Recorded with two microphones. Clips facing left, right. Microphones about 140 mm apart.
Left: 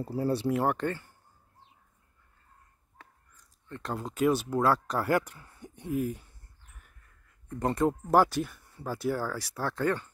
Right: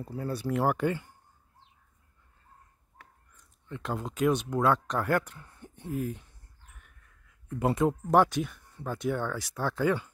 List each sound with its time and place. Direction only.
0.0 s speech: 30° left (ahead or behind)
0.5 s speech: centre (ahead or behind)
3.6 s speech: 5° right (ahead or behind)
6.8 s speech: 5° right (ahead or behind)